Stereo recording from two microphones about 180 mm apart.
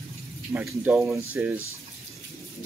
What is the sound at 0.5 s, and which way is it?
Speech, 10° right (ahead or behind).